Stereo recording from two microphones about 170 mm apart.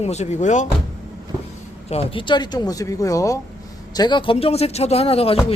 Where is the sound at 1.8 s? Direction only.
35° left (ahead or behind).